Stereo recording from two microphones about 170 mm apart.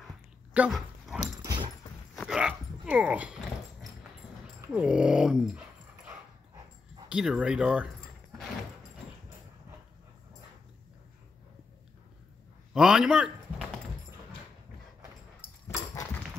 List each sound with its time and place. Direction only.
0.5 s dog: 5° right (ahead or behind)
1.4 s dog: 20° right (ahead or behind)
2.1 s dog: 5° right (ahead or behind)
4.7 s speech: 5° right (ahead or behind)
7.1 s speech: 5° right (ahead or behind)
12.7 s speech: 5° right (ahead or behind)
15.4 s dog: 20° left (ahead or behind)